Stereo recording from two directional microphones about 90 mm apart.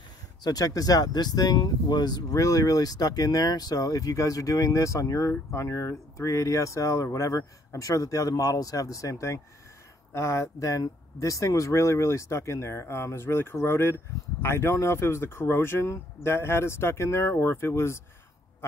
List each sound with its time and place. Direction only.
0.4 s speech: 45° left (ahead or behind); by 18.0 s 30° left (ahead or behind)